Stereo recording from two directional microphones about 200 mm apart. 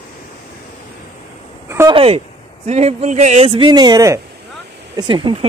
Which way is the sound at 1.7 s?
15° right (ahead or behind).